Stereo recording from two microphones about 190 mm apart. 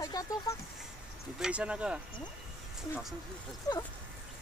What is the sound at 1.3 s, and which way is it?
Speech, 5° right (ahead or behind).